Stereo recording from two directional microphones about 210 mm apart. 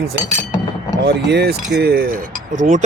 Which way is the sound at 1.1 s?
55° right (ahead or behind).